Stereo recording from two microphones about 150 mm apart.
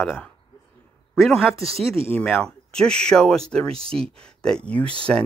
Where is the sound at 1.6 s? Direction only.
40° right (ahead or behind).